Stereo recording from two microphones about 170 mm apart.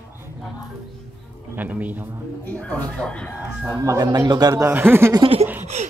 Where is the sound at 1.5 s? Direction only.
10° right (ahead or behind).